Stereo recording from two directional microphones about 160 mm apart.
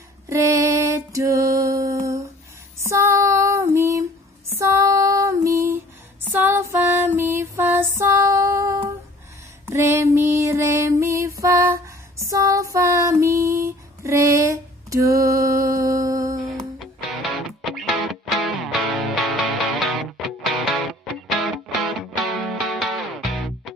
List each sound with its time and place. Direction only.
0.3 s music: 20° right (ahead or behind)
2.8 s female singing: 15° right (ahead or behind)
4.6 s music: 20° right (ahead or behind)
9.7 s female singing: 15° right (ahead or behind)
12.3 s music: 20° right (ahead or behind)
16.8 s music: centre (ahead or behind)
22.2 s music: centre (ahead or behind)